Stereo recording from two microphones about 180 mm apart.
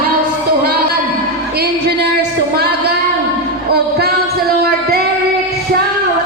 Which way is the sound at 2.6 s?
65° right (ahead or behind).